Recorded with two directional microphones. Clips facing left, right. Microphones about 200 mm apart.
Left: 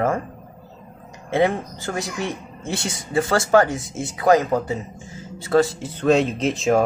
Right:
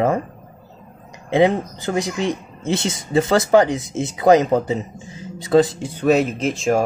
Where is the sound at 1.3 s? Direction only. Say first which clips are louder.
Right 4 dB; 20° right (ahead or behind); by 6.8 s centre (ahead or behind).